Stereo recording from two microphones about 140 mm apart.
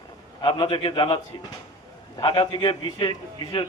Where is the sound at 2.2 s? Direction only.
35° left (ahead or behind).